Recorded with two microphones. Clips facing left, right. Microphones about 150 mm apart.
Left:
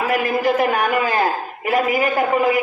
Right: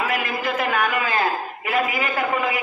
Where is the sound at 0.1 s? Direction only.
40° left (ahead or behind).